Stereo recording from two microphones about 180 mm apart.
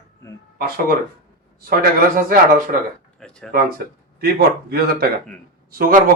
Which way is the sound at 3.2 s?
5° left (ahead or behind).